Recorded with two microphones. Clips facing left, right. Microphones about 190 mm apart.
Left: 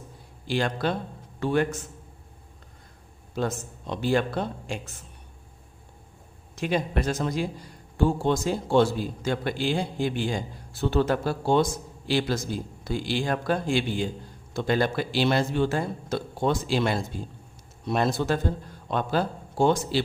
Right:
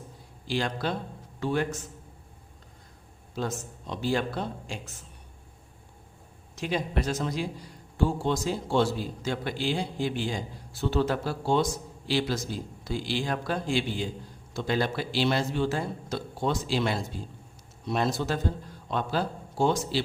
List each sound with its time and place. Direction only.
0.4 s speech: 55° left (ahead or behind)
3.3 s speech: 60° left (ahead or behind)
6.6 s a man's voice: 55° left (ahead or behind)